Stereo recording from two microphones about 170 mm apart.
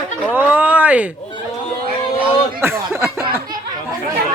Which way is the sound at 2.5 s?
15° right (ahead or behind).